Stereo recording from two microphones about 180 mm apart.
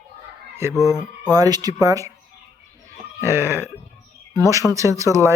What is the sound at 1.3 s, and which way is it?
Speech, 20° right (ahead or behind).